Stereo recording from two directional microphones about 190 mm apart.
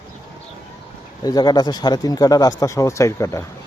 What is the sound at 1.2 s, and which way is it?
Speech, 20° left (ahead or behind).